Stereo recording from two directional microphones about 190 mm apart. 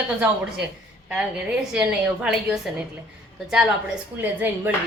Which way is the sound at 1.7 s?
5° right (ahead or behind).